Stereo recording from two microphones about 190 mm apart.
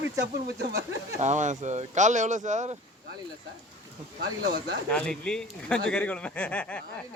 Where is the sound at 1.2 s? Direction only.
40° right (ahead or behind).